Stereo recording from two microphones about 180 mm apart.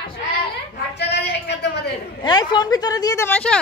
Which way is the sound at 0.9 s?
65° left (ahead or behind).